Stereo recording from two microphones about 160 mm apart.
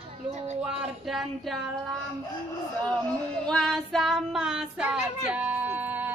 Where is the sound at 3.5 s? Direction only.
5° left (ahead or behind).